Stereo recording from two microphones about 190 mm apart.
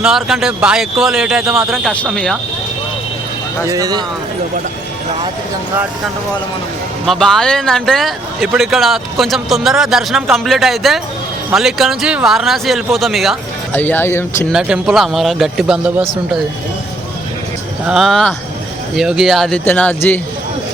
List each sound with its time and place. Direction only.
0.0 s speech: centre (ahead or behind)
3.7 s speech: 20° right (ahead or behind)
7.0 s speech: centre (ahead or behind)
13.7 s speech: 10° left (ahead or behind)
14.5 s speech: 5° right (ahead or behind)
17.8 s speech: centre (ahead or behind)